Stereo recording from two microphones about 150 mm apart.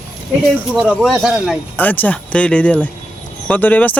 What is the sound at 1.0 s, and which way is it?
Speech, centre (ahead or behind).